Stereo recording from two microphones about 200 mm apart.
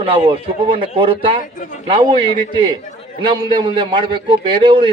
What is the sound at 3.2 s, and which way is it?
A man's voice, 25° right (ahead or behind).